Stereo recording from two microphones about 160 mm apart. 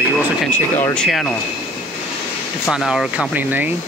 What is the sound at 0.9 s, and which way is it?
Speech, 5° left (ahead or behind).